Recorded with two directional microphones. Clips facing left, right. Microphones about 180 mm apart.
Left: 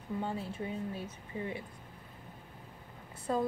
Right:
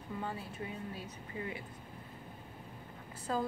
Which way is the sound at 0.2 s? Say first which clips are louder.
Left 3 dB; 25° left (ahead or behind).